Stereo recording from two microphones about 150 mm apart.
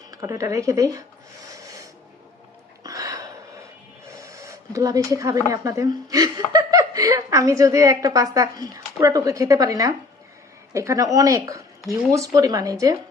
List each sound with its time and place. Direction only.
0.1 s speech: 20° right (ahead or behind)
2.8 s hiccup: 20° right (ahead or behind)
4.2 s speech: 20° right (ahead or behind)